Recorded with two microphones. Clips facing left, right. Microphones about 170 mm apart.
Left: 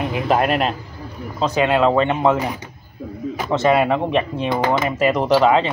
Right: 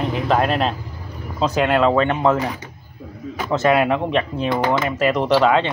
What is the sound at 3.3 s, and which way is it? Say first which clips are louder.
A man's voice: even; centre (ahead or behind).